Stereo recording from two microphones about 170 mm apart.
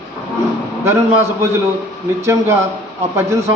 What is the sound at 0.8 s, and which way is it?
Speech, 15° right (ahead or behind).